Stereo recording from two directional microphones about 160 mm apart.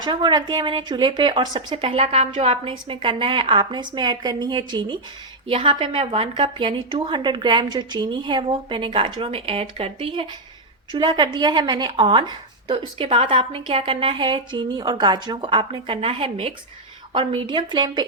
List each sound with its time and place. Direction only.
0.0 s a woman's voice: 30° right (ahead or behind)